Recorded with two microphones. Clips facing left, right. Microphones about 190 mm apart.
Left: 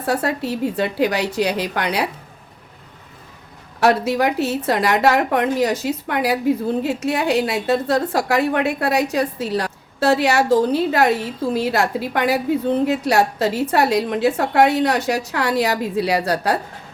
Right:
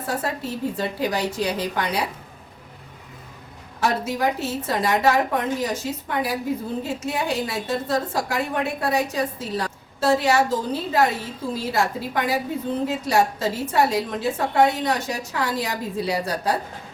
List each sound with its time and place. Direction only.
0.0 s a woman's voice: 70° left (ahead or behind)
3.8 s a woman's voice: 70° left (ahead or behind)